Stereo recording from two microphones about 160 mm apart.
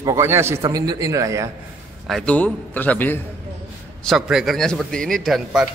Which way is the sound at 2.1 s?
5° left (ahead or behind).